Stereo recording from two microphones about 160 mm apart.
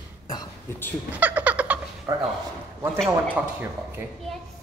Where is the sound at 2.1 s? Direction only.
25° right (ahead or behind).